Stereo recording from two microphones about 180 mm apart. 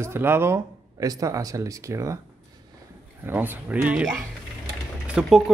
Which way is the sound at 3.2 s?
10° right (ahead or behind).